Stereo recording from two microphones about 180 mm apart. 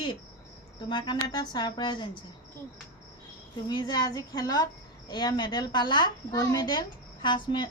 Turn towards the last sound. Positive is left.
turn(degrees=25)  # may be behind; listen again after turning